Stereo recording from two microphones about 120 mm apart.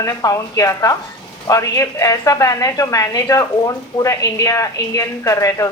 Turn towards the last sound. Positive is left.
turn(degrees=25)  # may be behind; listen again after turning